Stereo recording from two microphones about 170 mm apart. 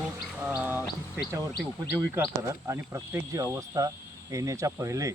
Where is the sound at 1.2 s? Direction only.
65° left (ahead or behind).